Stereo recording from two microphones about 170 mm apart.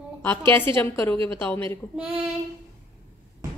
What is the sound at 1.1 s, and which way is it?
Speech, 30° right (ahead or behind).